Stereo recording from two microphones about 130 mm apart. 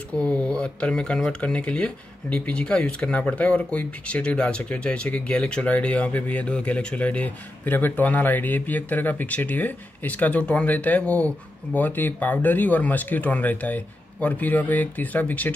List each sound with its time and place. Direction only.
0.2 s speech: 10° left (ahead or behind)